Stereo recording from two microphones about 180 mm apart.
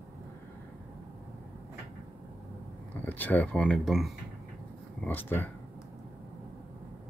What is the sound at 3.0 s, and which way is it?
Speech, 10° left (ahead or behind).